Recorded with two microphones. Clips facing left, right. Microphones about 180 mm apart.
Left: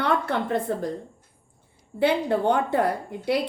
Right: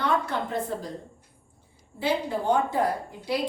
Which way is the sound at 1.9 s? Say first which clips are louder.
Left 5 dB; 65° left (ahead or behind).